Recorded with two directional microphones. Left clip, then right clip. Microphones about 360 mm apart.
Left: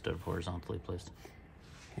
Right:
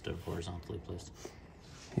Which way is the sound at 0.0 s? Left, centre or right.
Centre.